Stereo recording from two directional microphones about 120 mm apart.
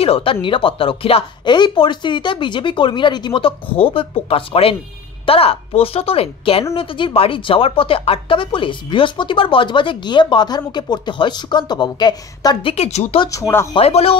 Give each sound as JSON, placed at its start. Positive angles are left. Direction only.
{"t": 0.0, "sound": "speech", "side_deg": 50}
{"t": 12.7, "sound": "a woman's voice", "side_deg": 65}
{"t": 13.3, "sound": "speech", "side_deg": 20}
{"t": 13.7, "sound": "a woman's voice", "side_deg": 55}